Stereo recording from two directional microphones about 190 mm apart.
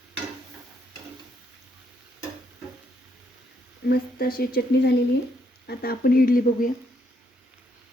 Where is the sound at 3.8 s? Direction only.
50° left (ahead or behind).